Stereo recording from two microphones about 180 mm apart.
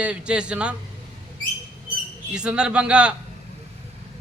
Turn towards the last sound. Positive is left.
turn(degrees=-5)  # may be behind; listen again after turning